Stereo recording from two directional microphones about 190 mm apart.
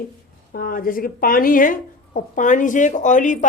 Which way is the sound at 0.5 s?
50° left (ahead or behind).